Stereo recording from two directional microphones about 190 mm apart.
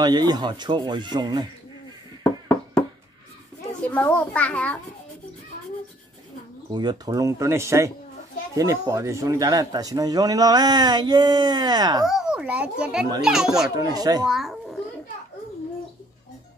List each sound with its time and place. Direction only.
0.0 s speech: 20° right (ahead or behind)
3.9 s a child's voice: 10° left (ahead or behind)
6.7 s speech: 20° right (ahead or behind)
12.1 s a child's voice: 5° right (ahead or behind)
13.7 s speech: 20° right (ahead or behind)
14.2 s a child's voice: centre (ahead or behind)